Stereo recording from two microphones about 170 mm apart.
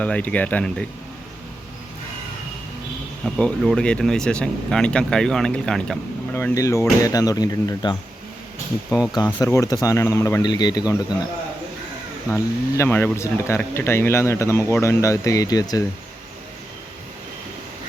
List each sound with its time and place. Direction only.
0.0 s speech: 10° left (ahead or behind)
3.2 s speech: 5° left (ahead or behind)
6.3 s speech: 15° left (ahead or behind)
12.3 s speech: 15° left (ahead or behind)